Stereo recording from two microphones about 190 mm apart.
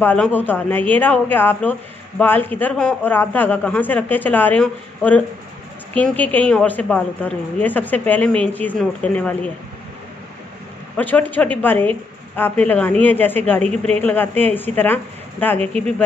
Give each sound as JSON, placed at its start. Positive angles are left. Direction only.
{"t": 0.0, "sound": "speech", "side_deg": 10}
{"t": 11.0, "sound": "speech", "side_deg": 10}
{"t": 13.6, "sound": "speech", "side_deg": -35}
{"t": 13.9, "sound": "speech", "side_deg": 10}